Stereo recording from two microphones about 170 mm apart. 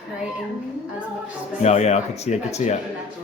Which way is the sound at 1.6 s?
40° left (ahead or behind).